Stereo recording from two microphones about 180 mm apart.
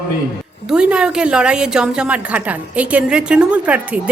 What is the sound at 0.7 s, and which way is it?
A woman's voice, 5° right (ahead or behind).